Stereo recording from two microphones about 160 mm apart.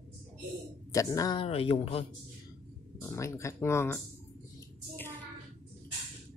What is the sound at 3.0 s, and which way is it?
Speech, 15° left (ahead or behind).